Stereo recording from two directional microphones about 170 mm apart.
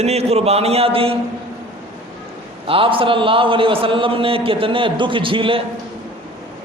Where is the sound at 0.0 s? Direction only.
40° right (ahead or behind).